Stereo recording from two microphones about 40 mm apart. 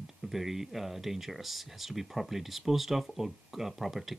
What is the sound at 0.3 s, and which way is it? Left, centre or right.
Speech, centre.